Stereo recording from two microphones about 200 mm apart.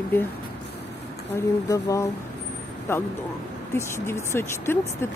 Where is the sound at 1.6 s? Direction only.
15° left (ahead or behind).